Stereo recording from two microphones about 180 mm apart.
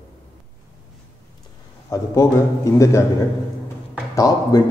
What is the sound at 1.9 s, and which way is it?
A man's voice, 15° left (ahead or behind).